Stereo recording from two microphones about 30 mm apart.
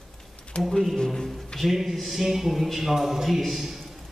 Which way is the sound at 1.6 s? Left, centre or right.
Centre.